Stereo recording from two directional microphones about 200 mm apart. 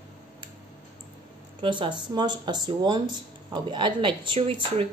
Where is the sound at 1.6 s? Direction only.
25° right (ahead or behind).